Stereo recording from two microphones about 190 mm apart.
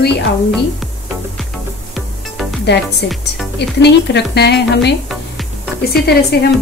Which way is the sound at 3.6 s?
60° left (ahead or behind).